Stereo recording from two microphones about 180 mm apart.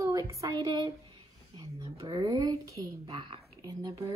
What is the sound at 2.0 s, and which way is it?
A woman's voice, 25° right (ahead or behind).